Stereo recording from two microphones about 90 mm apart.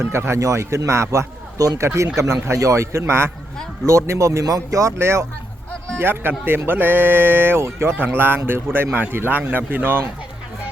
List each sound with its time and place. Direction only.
0.0 s a man's voice: 30° right (ahead or behind)
4.9 s speech: 30° right (ahead or behind)